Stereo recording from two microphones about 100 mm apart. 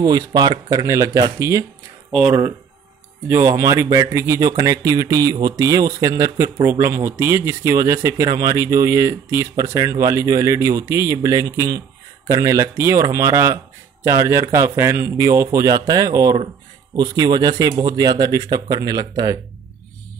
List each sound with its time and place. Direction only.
0.0 s speech: 40° right (ahead or behind)
3.3 s speech: 25° right (ahead or behind)